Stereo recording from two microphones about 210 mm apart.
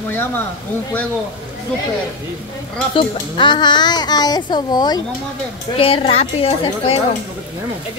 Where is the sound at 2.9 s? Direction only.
25° left (ahead or behind).